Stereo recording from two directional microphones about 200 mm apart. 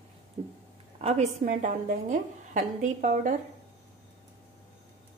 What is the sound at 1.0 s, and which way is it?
A woman's voice, 35° right (ahead or behind).